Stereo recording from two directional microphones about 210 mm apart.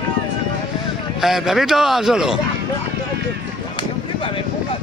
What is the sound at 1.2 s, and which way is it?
Speech, centre (ahead or behind).